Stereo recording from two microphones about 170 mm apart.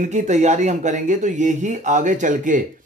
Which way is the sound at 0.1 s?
45° right (ahead or behind).